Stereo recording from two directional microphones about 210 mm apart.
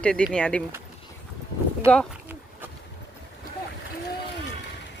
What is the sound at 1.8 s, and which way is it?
Speech, 5° left (ahead or behind).